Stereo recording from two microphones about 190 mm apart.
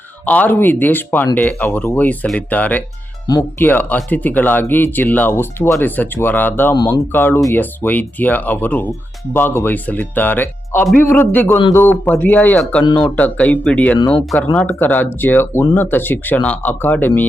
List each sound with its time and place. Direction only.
0.3 s speech: 10° left (ahead or behind)
3.2 s speech: 20° left (ahead or behind)
3.7 s speech: 10° left (ahead or behind)
14.0 s speech: 25° left (ahead or behind)
14.3 s speech: 5° left (ahead or behind)